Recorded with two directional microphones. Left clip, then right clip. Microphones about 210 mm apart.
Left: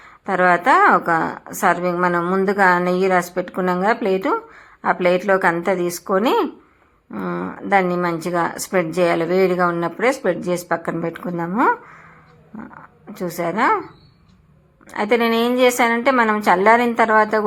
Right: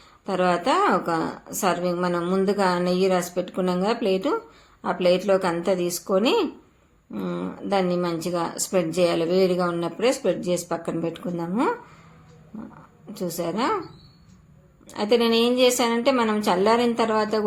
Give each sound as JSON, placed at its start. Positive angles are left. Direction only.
{"t": 0.3, "sound": "a woman's voice", "side_deg": 20}
{"t": 13.1, "sound": "a woman's voice", "side_deg": 25}
{"t": 14.8, "sound": "a woman's voice", "side_deg": 25}